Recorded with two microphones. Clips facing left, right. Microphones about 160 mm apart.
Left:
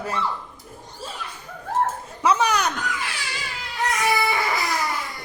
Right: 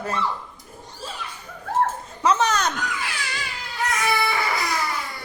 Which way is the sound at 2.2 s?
10° left (ahead or behind).